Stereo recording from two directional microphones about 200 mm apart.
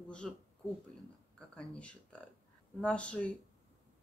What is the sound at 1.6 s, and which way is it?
Speech, 5° left (ahead or behind).